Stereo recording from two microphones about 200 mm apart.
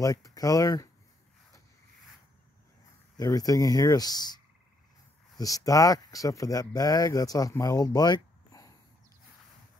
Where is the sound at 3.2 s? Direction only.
20° left (ahead or behind).